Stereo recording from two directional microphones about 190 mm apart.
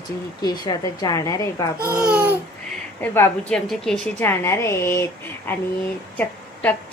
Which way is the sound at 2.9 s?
10° left (ahead or behind).